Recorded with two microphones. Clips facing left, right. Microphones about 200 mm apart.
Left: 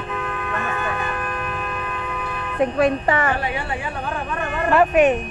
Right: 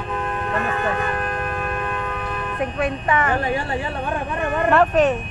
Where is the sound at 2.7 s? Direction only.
35° left (ahead or behind).